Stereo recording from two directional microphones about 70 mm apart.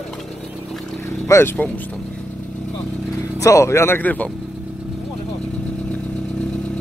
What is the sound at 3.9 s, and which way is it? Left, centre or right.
Speech, left.